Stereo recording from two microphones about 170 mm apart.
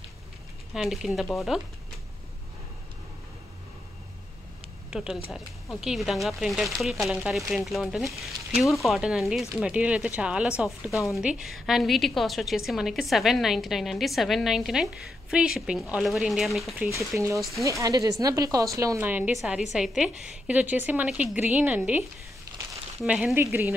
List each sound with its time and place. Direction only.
0.7 s a woman's voice: centre (ahead or behind)
4.9 s a woman's voice: 5° right (ahead or behind)
17.1 s a woman's voice: 10° right (ahead or behind)
23.0 s a woman's voice: 5° right (ahead or behind)